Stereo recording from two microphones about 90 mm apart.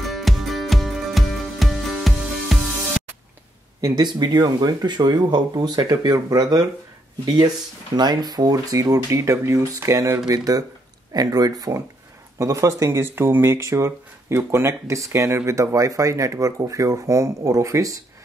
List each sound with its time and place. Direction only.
0.0 s music: centre (ahead or behind)
3.8 s speech: 50° right (ahead or behind); by 10.2 s 35° right (ahead or behind)
10.2 s speech: 45° right (ahead or behind)